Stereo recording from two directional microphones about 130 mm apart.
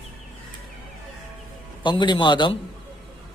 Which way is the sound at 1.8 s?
35° left (ahead or behind).